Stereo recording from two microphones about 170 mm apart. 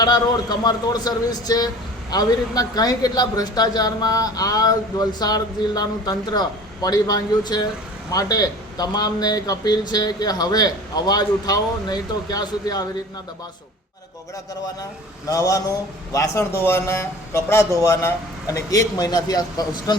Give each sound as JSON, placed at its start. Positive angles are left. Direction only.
{"t": 0.0, "sound": "speech", "side_deg": 25}
{"t": 15.3, "sound": "speech", "side_deg": 20}